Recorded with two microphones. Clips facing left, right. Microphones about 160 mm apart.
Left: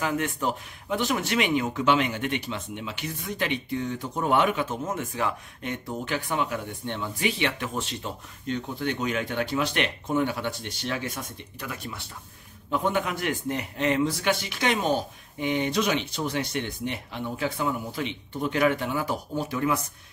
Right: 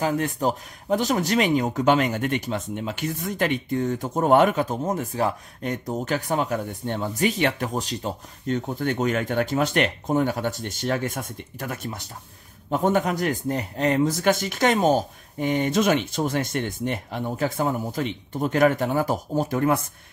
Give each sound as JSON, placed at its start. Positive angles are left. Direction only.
{"t": 0.0, "sound": "speech", "side_deg": -35}